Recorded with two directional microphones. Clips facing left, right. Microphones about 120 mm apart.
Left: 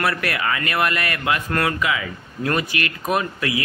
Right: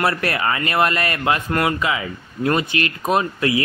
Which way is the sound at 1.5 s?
20° right (ahead or behind).